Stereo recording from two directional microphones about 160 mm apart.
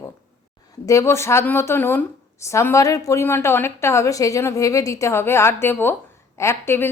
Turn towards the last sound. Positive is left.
turn(degrees=15)  # may be behind; listen again after turning